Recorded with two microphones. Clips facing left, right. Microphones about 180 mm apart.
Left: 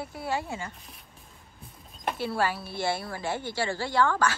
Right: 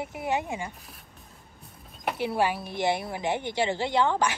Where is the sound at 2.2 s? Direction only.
15° right (ahead or behind).